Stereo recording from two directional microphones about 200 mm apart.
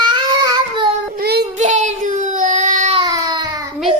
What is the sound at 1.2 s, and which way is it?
Child singing, 55° right (ahead or behind).